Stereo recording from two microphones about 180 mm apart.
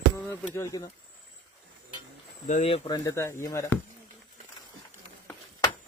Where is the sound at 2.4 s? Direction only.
35° left (ahead or behind); by 3.7 s 15° left (ahead or behind).